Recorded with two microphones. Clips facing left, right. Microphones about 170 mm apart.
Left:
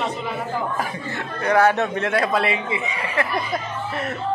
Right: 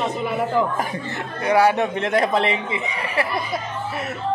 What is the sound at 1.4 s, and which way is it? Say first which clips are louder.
A man's voice: right 1 dB; 15° right (ahead or behind).